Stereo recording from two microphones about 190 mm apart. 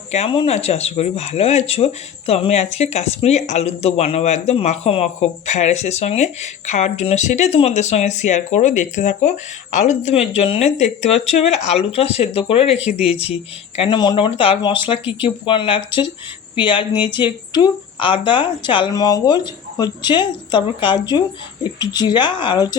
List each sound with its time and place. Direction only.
0.1 s speech: 30° left (ahead or behind)